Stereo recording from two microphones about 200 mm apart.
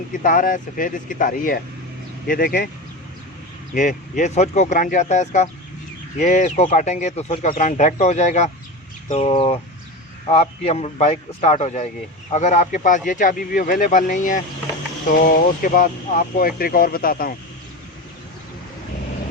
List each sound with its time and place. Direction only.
0.1 s speech: 40° left (ahead or behind)
3.8 s speech: 40° left (ahead or behind)